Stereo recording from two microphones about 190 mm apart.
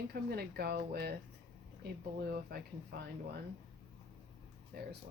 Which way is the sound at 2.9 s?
55° right (ahead or behind).